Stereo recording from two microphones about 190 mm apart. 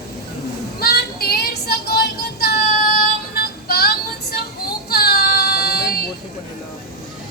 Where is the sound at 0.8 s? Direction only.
55° left (ahead or behind).